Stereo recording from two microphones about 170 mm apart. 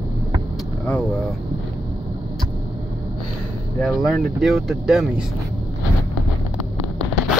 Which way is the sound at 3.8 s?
Centre (ahead or behind).